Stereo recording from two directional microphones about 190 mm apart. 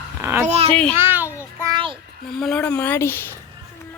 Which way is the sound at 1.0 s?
10° right (ahead or behind).